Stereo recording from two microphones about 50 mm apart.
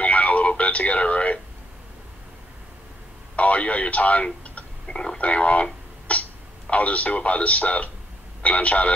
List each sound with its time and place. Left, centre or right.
0.0 s radio: left
3.3 s speech: left
6.1 s cough: left
6.7 s speech: left